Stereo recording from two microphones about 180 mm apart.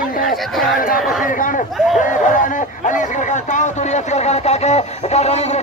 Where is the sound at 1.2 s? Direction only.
50° left (ahead or behind).